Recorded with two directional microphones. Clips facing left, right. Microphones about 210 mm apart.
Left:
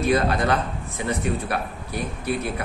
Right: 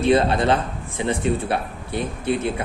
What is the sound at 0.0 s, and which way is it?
Speech, 25° right (ahead or behind).